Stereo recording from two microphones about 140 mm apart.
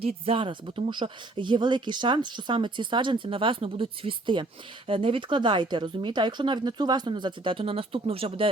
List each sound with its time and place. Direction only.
0.0 s speech: 45° right (ahead or behind)